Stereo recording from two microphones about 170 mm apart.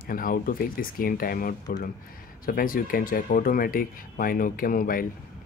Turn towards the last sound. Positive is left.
turn(degrees=55)  # may be behind; listen again after turning